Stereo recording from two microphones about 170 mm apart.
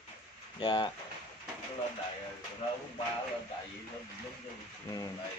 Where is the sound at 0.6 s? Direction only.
25° left (ahead or behind).